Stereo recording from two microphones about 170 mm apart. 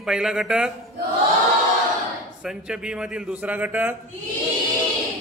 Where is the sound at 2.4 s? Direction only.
5° right (ahead or behind).